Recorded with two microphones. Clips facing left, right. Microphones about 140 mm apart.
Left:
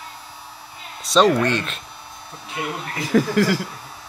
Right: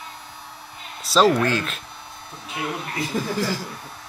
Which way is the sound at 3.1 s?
90° left.